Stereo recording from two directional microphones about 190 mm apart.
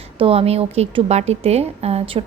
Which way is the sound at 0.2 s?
30° right (ahead or behind).